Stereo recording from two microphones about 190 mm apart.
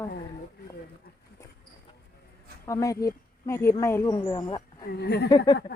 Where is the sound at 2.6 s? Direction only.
15° left (ahead or behind).